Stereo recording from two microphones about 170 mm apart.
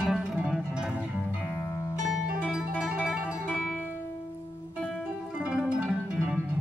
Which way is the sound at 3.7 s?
10° left (ahead or behind).